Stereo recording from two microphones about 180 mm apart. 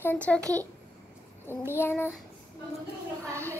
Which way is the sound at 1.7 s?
15° left (ahead or behind).